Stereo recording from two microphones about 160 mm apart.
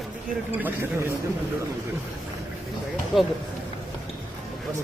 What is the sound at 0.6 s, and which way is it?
Speech, 10° right (ahead or behind).